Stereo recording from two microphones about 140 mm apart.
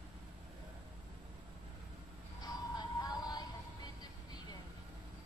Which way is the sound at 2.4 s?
30° left (ahead or behind).